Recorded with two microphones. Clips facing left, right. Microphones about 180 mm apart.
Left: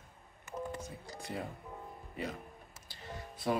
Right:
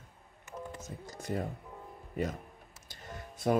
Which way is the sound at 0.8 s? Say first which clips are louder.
Even; 45° right (ahead or behind).